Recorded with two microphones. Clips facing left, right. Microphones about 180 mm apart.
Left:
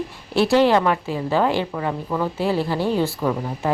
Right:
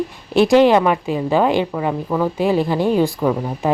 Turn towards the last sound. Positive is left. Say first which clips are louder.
# right 4 dB
turn(degrees=-15)  # may be behind; listen again after turning